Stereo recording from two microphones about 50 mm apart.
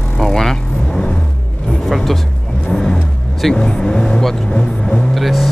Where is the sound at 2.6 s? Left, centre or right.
Centre.